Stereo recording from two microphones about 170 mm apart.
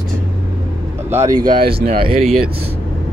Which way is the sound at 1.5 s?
60° right (ahead or behind).